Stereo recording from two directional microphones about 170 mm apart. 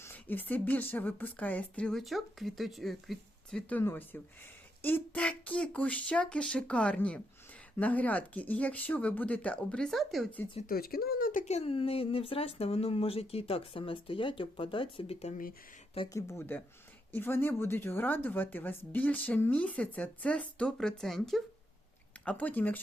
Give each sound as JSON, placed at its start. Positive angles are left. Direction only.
{"t": 0.0, "sound": "speech", "side_deg": 10}
{"t": 10.7, "sound": "speech", "side_deg": 65}
{"t": 16.1, "sound": "speech", "side_deg": 15}